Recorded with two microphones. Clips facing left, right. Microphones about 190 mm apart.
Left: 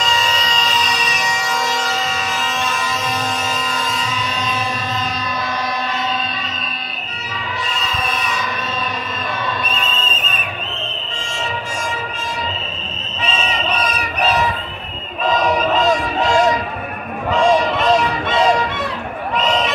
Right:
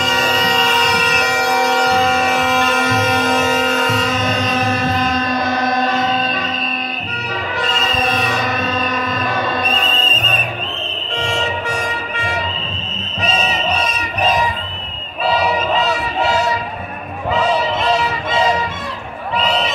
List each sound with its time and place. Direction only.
0.0 s music: 55° right (ahead or behind)
7.5 s music: 60° right (ahead or behind)
9.8 s music: 35° right (ahead or behind)
11.1 s music: 65° right (ahead or behind)